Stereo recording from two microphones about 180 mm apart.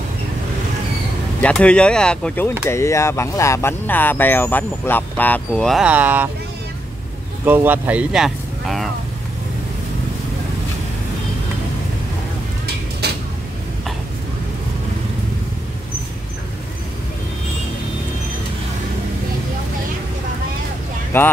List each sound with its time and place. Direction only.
1.4 s speech: 5° left (ahead or behind); by 6.3 s 10° right (ahead or behind)
7.4 s speech: 10° right (ahead or behind)
13.0 s a sound: 65° right (ahead or behind)
21.1 s speech: 15° left (ahead or behind)